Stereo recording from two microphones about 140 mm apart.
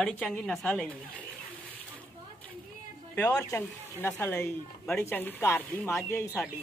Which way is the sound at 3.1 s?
10° left (ahead or behind).